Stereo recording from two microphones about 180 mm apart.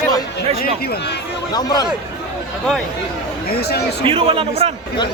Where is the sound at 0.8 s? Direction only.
60° left (ahead or behind).